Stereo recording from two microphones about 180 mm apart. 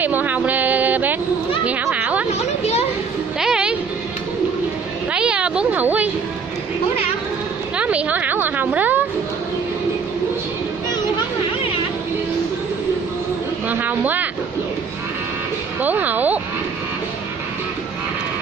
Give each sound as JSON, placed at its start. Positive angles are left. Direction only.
{"t": 0.0, "sound": "a sound", "side_deg": -10}
{"t": 2.3, "sound": "speech", "side_deg": 35}
{"t": 3.3, "sound": "music", "side_deg": -5}
{"t": 5.1, "sound": "a sound", "side_deg": -5}
{"t": 7.7, "sound": "a woman's voice", "side_deg": -5}
{"t": 13.7, "sound": "speech", "side_deg": -10}
{"t": 15.8, "sound": "speech", "side_deg": -10}